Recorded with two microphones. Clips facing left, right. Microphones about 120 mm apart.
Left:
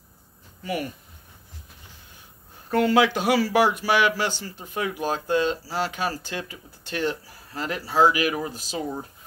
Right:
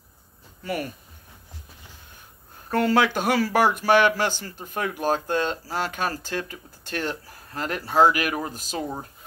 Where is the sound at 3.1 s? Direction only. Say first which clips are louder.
Left 1 dB; 45° right (ahead or behind).